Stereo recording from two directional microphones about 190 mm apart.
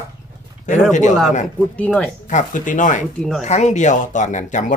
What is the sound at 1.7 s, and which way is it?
Speech, 5° left (ahead or behind).